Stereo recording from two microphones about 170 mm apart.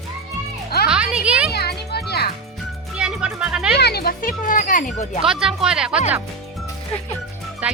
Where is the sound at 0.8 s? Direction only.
5° right (ahead or behind).